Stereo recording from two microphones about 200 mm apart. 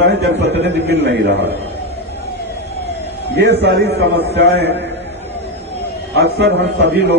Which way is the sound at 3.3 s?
55° right (ahead or behind).